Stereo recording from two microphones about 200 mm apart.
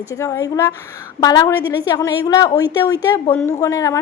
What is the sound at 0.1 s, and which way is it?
A woman's voice, 15° left (ahead or behind).